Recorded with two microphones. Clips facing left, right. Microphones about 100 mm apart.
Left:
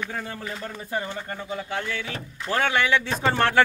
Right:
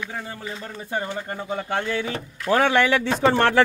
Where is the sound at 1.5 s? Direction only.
50° right (ahead or behind).